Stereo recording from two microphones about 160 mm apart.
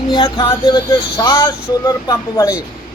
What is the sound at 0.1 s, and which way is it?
Speech, 30° left (ahead or behind).